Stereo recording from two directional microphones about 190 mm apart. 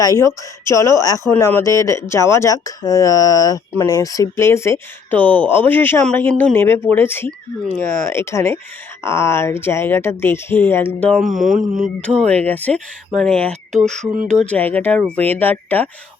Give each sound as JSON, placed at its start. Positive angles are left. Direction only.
{"t": 0.0, "sound": "speech", "side_deg": 15}
{"t": 11.4, "sound": "speech", "side_deg": -40}
{"t": 11.9, "sound": "speech", "side_deg": 5}